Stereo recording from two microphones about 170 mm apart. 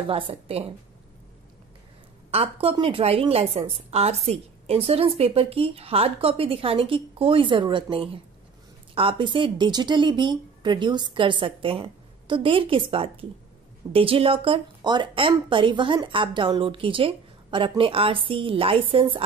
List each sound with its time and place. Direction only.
0.0 s a woman's voice: 35° right (ahead or behind)
2.3 s a woman's voice: 35° right (ahead or behind)